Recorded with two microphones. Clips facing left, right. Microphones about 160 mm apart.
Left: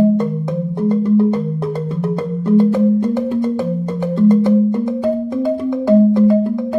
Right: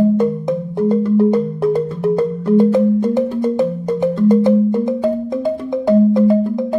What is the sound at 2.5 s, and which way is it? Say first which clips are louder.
Music: even; 15° right (ahead or behind).